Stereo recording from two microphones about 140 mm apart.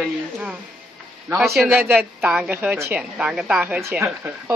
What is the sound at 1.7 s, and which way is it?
Speech, 15° right (ahead or behind).